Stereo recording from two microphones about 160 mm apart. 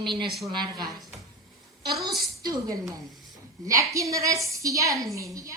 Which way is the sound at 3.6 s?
20° right (ahead or behind).